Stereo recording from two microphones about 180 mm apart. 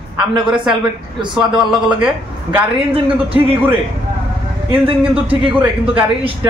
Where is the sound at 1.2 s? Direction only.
25° right (ahead or behind).